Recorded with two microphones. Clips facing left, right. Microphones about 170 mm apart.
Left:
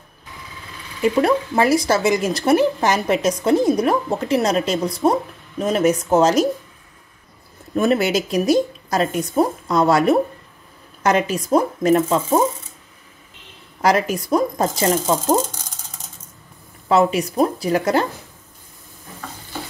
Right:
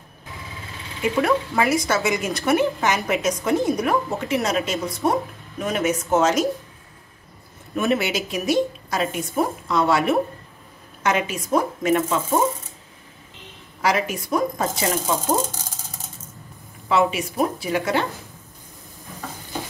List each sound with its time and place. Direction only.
1.0 s a woman's voice: 35° left (ahead or behind)
7.7 s a woman's voice: 35° left (ahead or behind)
13.7 s a woman's voice: 40° left (ahead or behind)
16.9 s a woman's voice: 40° left (ahead or behind)